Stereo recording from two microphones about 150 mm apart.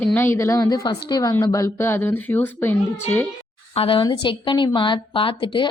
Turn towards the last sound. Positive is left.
turn(degrees=35)  # may be behind; listen again after turning